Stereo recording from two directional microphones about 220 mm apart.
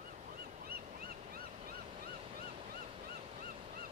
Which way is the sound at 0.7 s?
40° right (ahead or behind).